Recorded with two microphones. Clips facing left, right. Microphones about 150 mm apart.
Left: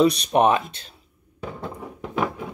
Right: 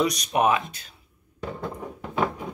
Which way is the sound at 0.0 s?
30° left (ahead or behind).